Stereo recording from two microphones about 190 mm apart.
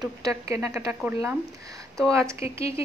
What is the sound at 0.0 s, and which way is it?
A woman's voice, 20° right (ahead or behind).